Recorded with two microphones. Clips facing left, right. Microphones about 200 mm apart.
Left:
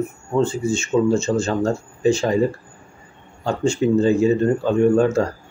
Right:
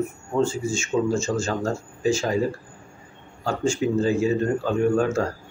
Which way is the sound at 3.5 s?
5° right (ahead or behind).